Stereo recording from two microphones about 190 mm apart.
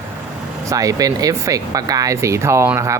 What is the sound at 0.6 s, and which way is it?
Speech, 20° right (ahead or behind).